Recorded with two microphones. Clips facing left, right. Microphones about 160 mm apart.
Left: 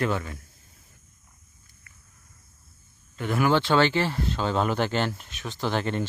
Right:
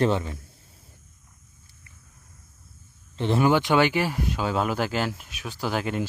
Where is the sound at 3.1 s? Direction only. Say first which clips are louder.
Right 3 dB; 25° right (ahead or behind).